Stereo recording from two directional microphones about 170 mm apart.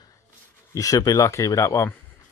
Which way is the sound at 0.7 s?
20° left (ahead or behind).